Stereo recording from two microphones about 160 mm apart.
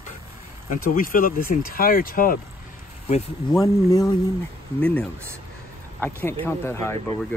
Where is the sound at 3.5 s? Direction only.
20° left (ahead or behind).